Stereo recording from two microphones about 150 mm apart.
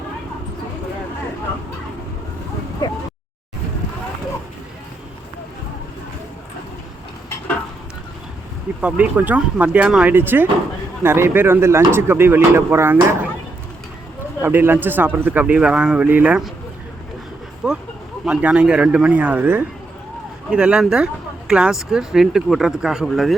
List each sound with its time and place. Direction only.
2.8 s speech: 25° left (ahead or behind)
8.8 s speech: 10° right (ahead or behind)
14.4 s speech: 15° right (ahead or behind)
17.6 s speech: 5° right (ahead or behind)